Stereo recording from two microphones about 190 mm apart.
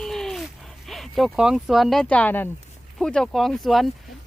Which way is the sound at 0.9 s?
Centre (ahead or behind).